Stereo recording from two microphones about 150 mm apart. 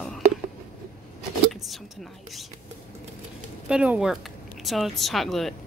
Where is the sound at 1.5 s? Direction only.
Centre (ahead or behind).